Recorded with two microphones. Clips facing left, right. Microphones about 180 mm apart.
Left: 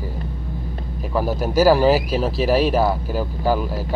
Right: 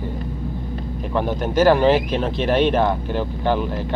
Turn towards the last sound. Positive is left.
turn(degrees=5)  # may be behind; listen again after turning